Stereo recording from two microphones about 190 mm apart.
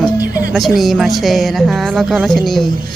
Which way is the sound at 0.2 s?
50° right (ahead or behind).